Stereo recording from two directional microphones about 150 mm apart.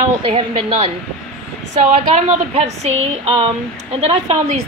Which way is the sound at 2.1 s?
45° right (ahead or behind).